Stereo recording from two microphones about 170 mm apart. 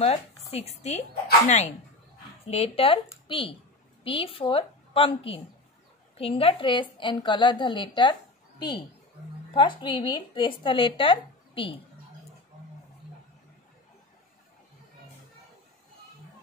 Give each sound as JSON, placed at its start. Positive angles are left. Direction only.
{"t": 0.0, "sound": "speech", "side_deg": 35}
{"t": 2.4, "sound": "a woman's voice", "side_deg": 35}